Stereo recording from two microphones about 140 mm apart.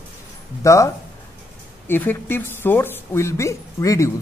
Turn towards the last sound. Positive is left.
turn(degrees=20)  # may be behind; listen again after turning